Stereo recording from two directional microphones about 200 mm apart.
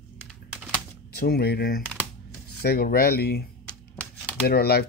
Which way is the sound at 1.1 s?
50° left (ahead or behind).